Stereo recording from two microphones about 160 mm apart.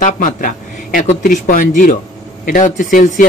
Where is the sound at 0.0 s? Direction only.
55° left (ahead or behind).